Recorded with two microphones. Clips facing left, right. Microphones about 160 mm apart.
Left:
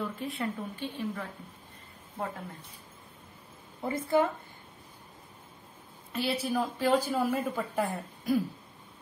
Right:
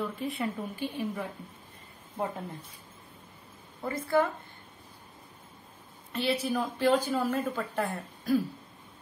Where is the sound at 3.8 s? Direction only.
20° left (ahead or behind).